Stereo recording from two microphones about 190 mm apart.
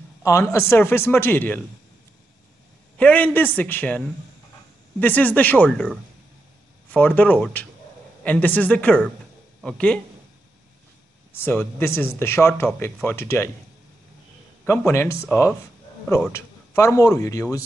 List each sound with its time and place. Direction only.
0.2 s speech: 15° left (ahead or behind)
3.0 s a man's voice: 10° left (ahead or behind)
11.3 s speech: 10° left (ahead or behind)
14.6 s a man's voice: 10° left (ahead or behind)
16.3 s speech: 15° left (ahead or behind)